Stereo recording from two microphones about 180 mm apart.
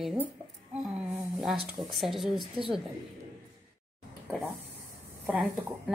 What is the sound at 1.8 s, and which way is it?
Speech, centre (ahead or behind).